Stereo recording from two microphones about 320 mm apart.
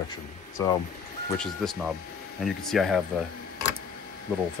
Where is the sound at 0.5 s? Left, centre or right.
Centre.